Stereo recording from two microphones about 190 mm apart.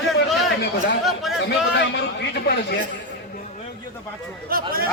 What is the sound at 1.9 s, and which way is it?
Speech, 65° left (ahead or behind).